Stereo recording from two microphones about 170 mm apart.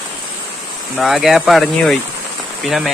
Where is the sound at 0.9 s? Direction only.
Centre (ahead or behind).